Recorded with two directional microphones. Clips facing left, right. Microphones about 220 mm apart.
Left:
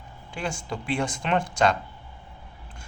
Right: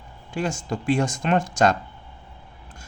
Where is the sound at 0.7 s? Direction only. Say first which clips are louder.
Right 5 dB; 45° right (ahead or behind).